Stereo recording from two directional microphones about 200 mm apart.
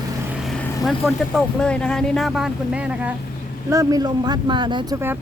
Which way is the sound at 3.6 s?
15° right (ahead or behind).